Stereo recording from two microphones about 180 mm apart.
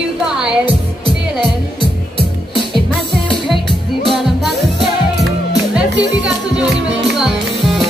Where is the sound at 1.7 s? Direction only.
30° left (ahead or behind).